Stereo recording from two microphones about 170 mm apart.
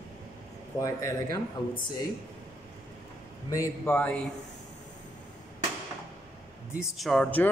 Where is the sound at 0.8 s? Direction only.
20° left (ahead or behind).